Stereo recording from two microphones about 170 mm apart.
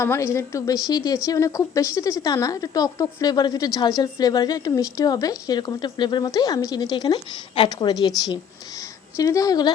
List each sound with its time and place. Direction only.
0.0 s a woman's voice: 15° left (ahead or behind)
9.1 s speech: 20° left (ahead or behind)